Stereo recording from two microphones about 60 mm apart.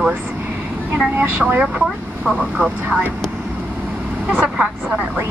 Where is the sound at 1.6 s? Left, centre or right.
Centre.